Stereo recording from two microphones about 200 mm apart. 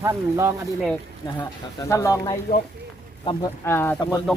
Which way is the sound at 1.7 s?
15° left (ahead or behind).